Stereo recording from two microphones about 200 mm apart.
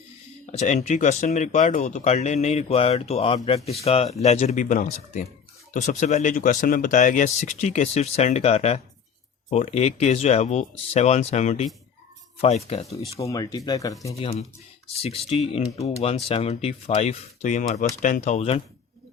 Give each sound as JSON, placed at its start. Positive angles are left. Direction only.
{"t": 0.5, "sound": "speech", "side_deg": 35}
{"t": 13.1, "sound": "speech", "side_deg": 15}
{"t": 14.2, "sound": "speech", "side_deg": 30}